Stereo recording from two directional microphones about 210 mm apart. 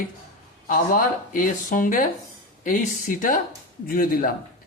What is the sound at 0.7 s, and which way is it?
A man's voice, 40° left (ahead or behind).